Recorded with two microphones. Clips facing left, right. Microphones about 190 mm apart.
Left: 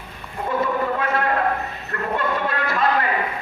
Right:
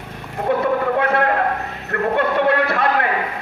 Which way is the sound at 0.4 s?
65° right (ahead or behind).